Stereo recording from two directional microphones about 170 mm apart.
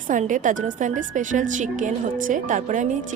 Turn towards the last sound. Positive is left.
turn(degrees=-50)  # may be behind; listen again after turning